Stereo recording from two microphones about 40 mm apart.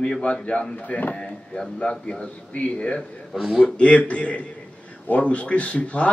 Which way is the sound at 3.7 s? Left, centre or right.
Left.